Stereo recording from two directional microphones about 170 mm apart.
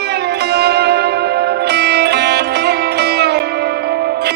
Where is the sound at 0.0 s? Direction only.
75° right (ahead or behind).